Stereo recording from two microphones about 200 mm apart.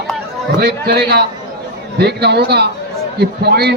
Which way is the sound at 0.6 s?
55° right (ahead or behind).